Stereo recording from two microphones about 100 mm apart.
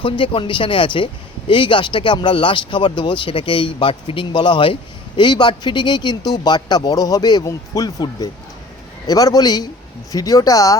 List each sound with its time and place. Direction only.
0.0 s speech: 55° left (ahead or behind); by 10.8 s 35° left (ahead or behind)